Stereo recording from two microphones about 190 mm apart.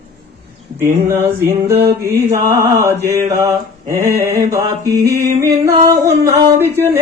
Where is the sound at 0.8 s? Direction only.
10° right (ahead or behind).